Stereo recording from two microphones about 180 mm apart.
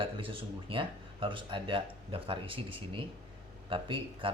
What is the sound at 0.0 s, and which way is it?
Speech, 30° right (ahead or behind).